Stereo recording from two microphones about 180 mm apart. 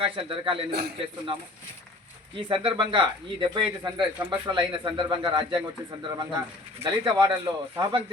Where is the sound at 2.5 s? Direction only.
30° right (ahead or behind).